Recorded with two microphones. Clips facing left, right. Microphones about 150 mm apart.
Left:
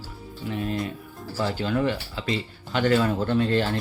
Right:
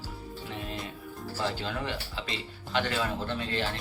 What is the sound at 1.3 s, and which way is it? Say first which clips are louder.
Speech: left 8 dB; 55° left (ahead or behind).